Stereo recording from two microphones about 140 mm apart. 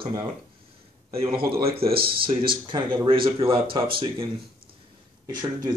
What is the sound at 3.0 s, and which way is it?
Speech, 40° right (ahead or behind).